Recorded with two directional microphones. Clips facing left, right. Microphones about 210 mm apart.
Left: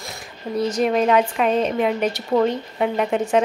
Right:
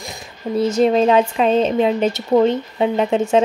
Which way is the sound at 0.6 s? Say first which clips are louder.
Right 4 dB; 25° right (ahead or behind).